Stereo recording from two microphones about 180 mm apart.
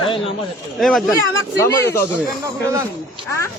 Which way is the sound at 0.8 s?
Centre (ahead or behind).